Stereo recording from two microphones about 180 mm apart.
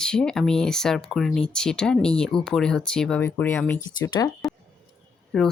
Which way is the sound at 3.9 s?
25° left (ahead or behind).